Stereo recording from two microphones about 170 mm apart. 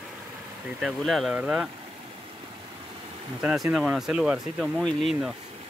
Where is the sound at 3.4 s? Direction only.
5° right (ahead or behind).